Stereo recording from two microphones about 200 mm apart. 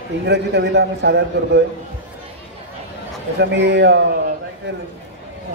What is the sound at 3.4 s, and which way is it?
Speech, 60° right (ahead or behind).